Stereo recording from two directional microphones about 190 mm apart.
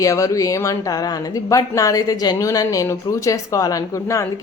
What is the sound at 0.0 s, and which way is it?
A woman's voice, 15° left (ahead or behind).